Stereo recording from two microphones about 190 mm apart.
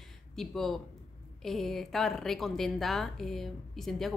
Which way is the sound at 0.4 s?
Centre (ahead or behind).